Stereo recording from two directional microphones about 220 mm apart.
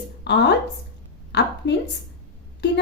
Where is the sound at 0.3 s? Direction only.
50° left (ahead or behind).